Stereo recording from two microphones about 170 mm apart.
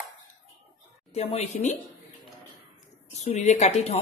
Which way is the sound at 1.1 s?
40° left (ahead or behind).